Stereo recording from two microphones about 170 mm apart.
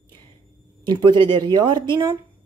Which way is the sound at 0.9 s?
25° right (ahead or behind).